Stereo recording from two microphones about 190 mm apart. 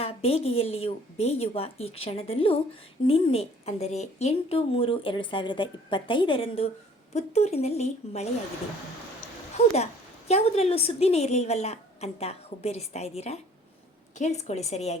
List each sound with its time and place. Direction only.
0.0 s a woman's voice: 30° left (ahead or behind)
9.7 s a woman's voice: 35° left (ahead or behind)